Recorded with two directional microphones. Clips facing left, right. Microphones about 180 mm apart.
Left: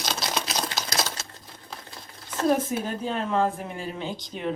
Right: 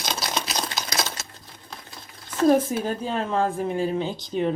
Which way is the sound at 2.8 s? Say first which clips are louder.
Right 2 dB; 35° right (ahead or behind).